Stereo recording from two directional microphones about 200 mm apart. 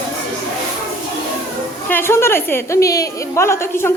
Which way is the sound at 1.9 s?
10° left (ahead or behind).